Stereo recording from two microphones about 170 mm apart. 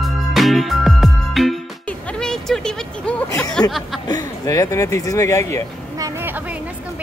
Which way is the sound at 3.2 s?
20° left (ahead or behind).